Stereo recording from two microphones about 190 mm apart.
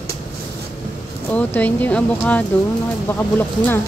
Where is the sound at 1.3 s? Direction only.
10° left (ahead or behind).